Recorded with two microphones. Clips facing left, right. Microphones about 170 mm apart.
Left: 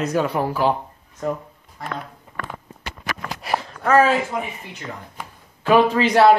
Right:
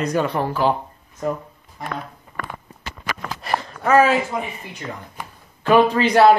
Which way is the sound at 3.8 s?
5° right (ahead or behind).